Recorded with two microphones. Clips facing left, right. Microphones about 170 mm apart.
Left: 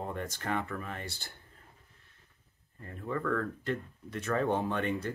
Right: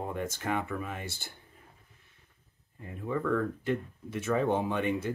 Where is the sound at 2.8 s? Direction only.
10° right (ahead or behind).